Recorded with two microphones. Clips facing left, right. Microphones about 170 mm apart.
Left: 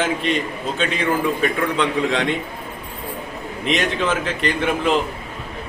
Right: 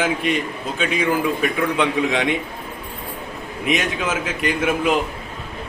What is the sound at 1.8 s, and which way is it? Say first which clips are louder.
Speech: even; 10° right (ahead or behind).